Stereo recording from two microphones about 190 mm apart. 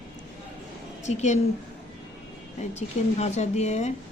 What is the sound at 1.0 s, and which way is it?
Speech, 35° left (ahead or behind).